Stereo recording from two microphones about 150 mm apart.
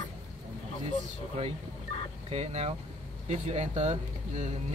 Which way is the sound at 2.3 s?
45° right (ahead or behind).